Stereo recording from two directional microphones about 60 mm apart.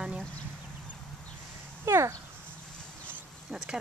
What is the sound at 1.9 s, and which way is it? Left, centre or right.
Speech, right.